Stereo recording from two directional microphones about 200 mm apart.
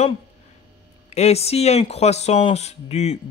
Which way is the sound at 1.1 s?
30° left (ahead or behind).